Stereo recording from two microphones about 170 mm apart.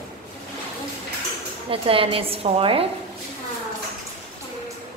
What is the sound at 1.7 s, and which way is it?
A woman's voice, 35° right (ahead or behind).